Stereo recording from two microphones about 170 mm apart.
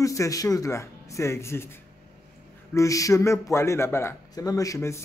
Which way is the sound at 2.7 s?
20° left (ahead or behind).